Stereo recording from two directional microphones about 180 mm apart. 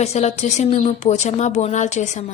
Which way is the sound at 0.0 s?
35° left (ahead or behind).